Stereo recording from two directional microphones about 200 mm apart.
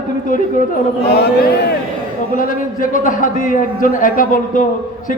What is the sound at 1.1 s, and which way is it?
Mantra, 55° left (ahead or behind).